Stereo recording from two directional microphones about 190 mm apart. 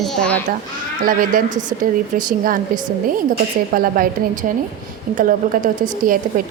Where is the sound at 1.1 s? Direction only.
45° right (ahead or behind).